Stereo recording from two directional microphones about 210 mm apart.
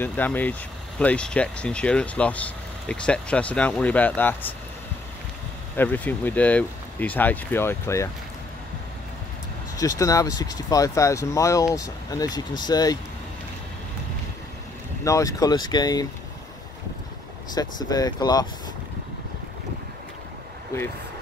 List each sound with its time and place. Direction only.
0.0 s speech: 10° left (ahead or behind)
5.8 s speech: 10° left (ahead or behind)
9.8 s speech: 15° left (ahead or behind)
15.0 s speech: 15° left (ahead or behind)
17.6 s speech: 20° left (ahead or behind)